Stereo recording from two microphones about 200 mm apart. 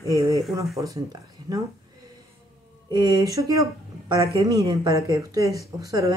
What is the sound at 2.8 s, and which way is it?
Speech, 20° right (ahead or behind).